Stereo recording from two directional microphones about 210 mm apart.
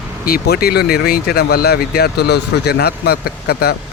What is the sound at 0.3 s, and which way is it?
Speech, 45° left (ahead or behind).